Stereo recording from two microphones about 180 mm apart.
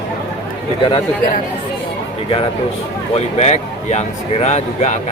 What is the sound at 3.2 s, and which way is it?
Speech, 35° left (ahead or behind).